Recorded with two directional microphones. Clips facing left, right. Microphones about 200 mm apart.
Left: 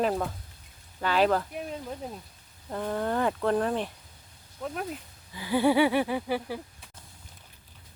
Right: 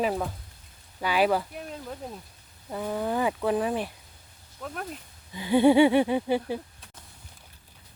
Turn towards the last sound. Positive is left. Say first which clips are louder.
# right 4 dB
turn(degrees=-25)  # may be behind; listen again after turning